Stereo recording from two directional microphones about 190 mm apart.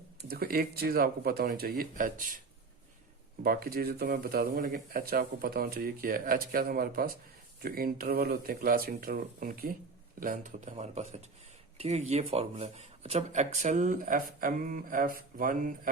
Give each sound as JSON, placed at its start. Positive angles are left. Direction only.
{"t": 0.2, "sound": "speech", "side_deg": -55}
{"t": 3.4, "sound": "speech", "side_deg": -50}